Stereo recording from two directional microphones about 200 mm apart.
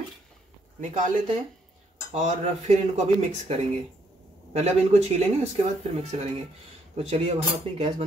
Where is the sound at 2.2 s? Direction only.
35° right (ahead or behind).